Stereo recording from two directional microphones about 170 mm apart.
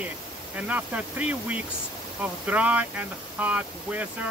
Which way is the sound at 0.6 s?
10° right (ahead or behind).